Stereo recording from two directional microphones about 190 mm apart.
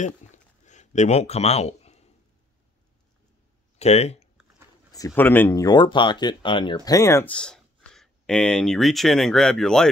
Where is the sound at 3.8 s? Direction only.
35° left (ahead or behind).